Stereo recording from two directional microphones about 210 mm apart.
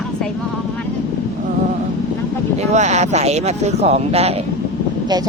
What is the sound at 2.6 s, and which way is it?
Speech, 30° right (ahead or behind).